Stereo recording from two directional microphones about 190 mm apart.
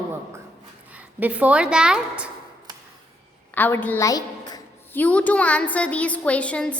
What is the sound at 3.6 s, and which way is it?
A woman's voice, 10° left (ahead or behind).